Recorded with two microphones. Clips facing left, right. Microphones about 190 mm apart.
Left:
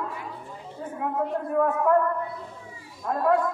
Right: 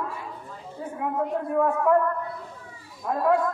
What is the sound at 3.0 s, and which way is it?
Speech, centre (ahead or behind).